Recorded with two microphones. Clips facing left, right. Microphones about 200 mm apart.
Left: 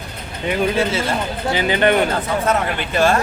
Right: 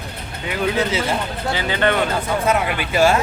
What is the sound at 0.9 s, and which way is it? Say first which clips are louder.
Speech: even; 15° right (ahead or behind).